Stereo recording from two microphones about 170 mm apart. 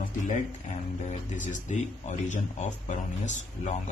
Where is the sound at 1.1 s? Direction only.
45° left (ahead or behind).